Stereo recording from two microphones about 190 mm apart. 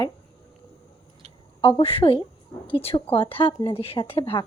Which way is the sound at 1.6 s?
30° left (ahead or behind).